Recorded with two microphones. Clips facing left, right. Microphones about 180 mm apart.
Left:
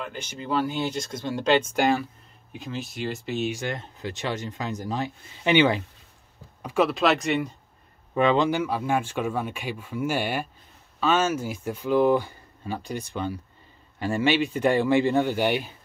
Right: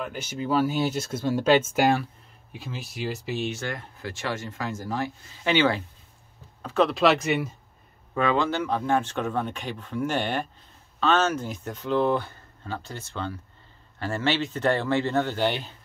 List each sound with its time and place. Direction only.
0.0 s speech: 10° right (ahead or behind)
3.5 s speech: 20° left (ahead or behind); by 7.5 s centre (ahead or behind)
8.1 s speech: 20° left (ahead or behind)